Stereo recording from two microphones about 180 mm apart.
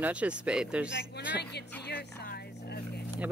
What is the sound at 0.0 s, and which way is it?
Speech, 5° right (ahead or behind).